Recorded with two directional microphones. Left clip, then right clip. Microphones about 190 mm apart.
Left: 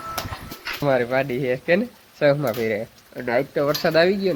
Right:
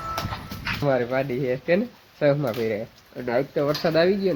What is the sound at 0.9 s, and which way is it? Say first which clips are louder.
Speech: left 3 dB; 10° left (ahead or behind).